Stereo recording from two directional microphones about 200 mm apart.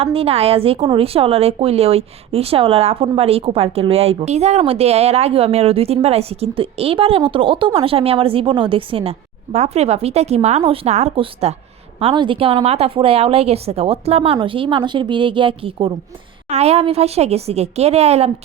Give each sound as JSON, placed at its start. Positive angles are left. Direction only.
{"t": 0.0, "sound": "a woman's voice", "side_deg": -30}